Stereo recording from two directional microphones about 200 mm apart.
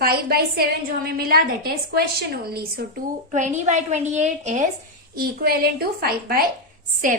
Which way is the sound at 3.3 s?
40° right (ahead or behind).